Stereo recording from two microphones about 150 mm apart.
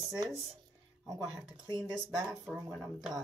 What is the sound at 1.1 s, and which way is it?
Speech, 20° right (ahead or behind).